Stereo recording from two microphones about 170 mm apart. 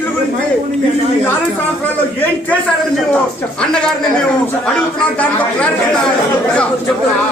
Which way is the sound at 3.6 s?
5° left (ahead or behind).